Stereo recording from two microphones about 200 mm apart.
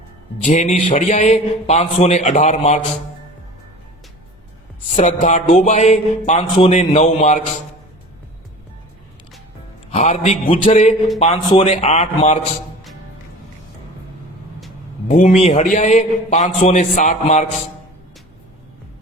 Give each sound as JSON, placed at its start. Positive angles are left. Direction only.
{"t": 0.4, "sound": "speech", "side_deg": 35}
{"t": 4.9, "sound": "speech", "side_deg": 35}
{"t": 9.9, "sound": "speech", "side_deg": 35}
{"t": 15.0, "sound": "speech", "side_deg": 35}